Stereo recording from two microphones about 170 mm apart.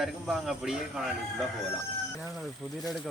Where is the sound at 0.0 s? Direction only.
Centre (ahead or behind).